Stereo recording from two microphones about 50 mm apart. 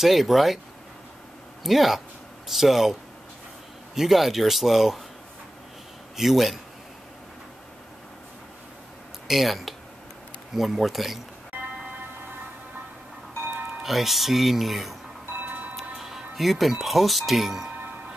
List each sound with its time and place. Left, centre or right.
0.0 s speech: centre
1.6 s speech: centre
6.1 s speech: centre
9.3 s speech: centre
13.8 s speech: centre
15.4 s music: right
15.7 s speech: centre